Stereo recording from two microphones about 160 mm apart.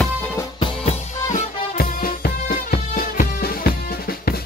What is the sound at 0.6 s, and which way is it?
Music, 30° left (ahead or behind).